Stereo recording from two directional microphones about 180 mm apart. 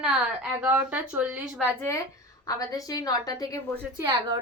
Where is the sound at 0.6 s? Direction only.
10° right (ahead or behind).